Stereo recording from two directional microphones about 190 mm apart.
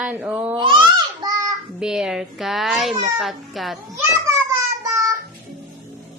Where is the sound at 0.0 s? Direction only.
10° right (ahead or behind).